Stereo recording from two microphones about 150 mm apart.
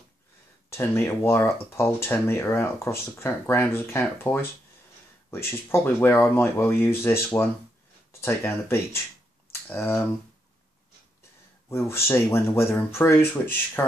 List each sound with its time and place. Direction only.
0.7 s speech: 15° left (ahead or behind)
11.7 s speech: 15° left (ahead or behind)